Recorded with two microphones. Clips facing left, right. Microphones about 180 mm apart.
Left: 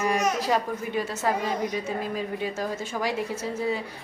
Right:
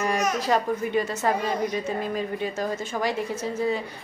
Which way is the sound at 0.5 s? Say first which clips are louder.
Right 3 dB; 5° left (ahead or behind).